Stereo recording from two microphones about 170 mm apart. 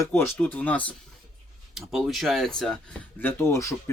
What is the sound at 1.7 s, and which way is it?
Speech, centre (ahead or behind).